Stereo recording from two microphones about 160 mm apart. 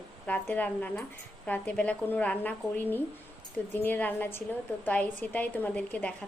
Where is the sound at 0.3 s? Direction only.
10° left (ahead or behind).